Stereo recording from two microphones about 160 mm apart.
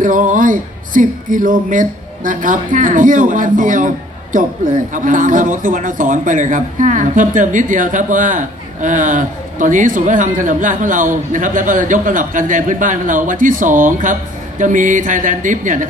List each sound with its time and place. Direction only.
0.0 s speech: 55° right (ahead or behind)